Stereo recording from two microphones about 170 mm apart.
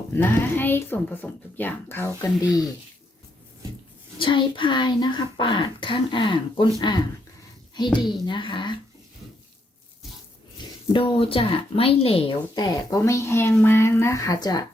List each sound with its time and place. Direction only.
0.1 s speech: 10° left (ahead or behind)
4.2 s speech: 30° left (ahead or behind)
8.2 s speech: 30° left (ahead or behind)
10.6 s a sound: 25° left (ahead or behind)
10.9 s speech: 30° left (ahead or behind)